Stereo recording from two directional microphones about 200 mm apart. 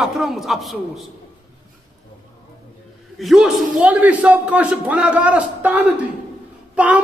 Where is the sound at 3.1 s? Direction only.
Centre (ahead or behind).